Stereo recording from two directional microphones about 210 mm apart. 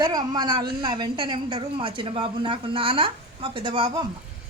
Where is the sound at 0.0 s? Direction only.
20° right (ahead or behind).